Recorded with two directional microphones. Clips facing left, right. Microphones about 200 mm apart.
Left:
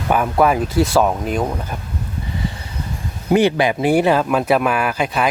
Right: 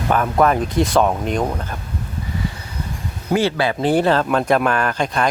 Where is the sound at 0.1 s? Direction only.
10° left (ahead or behind).